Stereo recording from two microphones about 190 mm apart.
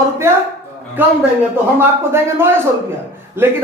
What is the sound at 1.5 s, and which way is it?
A man's voice, 10° right (ahead or behind).